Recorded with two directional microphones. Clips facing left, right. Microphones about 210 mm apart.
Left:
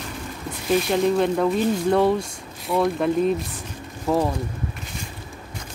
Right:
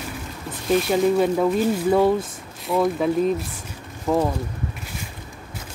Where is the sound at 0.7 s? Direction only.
5° right (ahead or behind).